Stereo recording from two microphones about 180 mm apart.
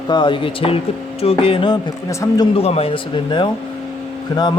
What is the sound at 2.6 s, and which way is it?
Speech, 35° left (ahead or behind).